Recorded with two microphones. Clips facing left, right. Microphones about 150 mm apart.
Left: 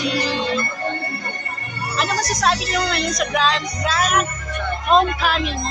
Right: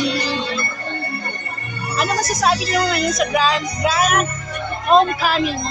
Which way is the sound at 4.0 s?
45° right (ahead or behind).